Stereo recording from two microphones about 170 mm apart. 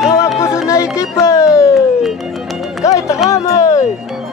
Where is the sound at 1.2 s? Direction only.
15° left (ahead or behind).